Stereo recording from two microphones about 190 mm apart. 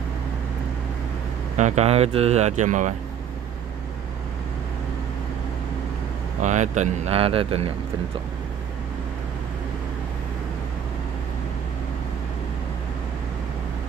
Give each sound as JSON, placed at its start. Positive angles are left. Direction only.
{"t": 1.6, "sound": "speech", "side_deg": -35}
{"t": 6.4, "sound": "speech", "side_deg": -40}